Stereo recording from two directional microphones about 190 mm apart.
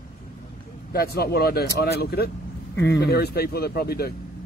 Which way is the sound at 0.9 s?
55° left (ahead or behind).